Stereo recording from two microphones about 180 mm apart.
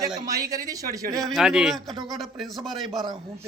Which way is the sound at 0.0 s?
20° right (ahead or behind).